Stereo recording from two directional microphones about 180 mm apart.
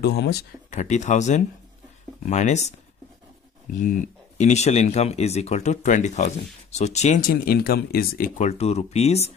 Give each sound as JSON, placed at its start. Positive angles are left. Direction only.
{"t": 0.0, "sound": "speech", "side_deg": 65}
{"t": 0.7, "sound": "speech", "side_deg": 40}
{"t": 3.8, "sound": "speech", "side_deg": 40}